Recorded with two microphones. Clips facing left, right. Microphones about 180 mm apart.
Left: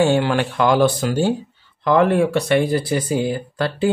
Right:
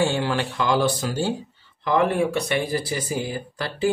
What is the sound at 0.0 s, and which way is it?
Speech, 60° left (ahead or behind).